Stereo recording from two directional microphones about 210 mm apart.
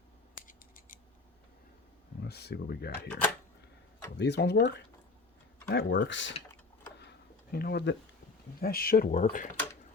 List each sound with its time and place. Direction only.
2.2 s speech: 50° left (ahead or behind)
4.2 s speech: 55° left (ahead or behind)
7.0 s a sound: 50° left (ahead or behind)
8.6 s speech: 45° left (ahead or behind)